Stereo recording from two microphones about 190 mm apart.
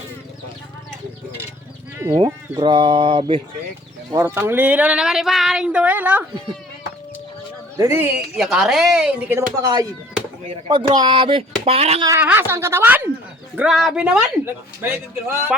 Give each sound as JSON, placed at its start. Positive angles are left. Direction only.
{"t": 2.0, "sound": "speech", "side_deg": -20}
{"t": 4.1, "sound": "speech", "side_deg": -15}
{"t": 7.8, "sound": "speech", "side_deg": -15}
{"t": 9.6, "sound": "speech", "side_deg": -20}
{"t": 12.0, "sound": "speech", "side_deg": -10}